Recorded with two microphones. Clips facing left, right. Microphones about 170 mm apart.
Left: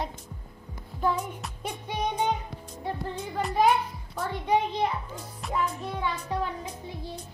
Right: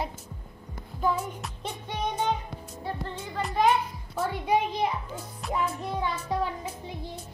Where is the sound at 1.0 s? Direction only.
Centre (ahead or behind).